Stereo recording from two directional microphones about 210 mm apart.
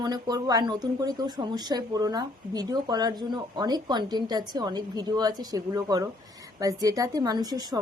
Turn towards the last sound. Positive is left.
turn(degrees=-20)  # may be behind; listen again after turning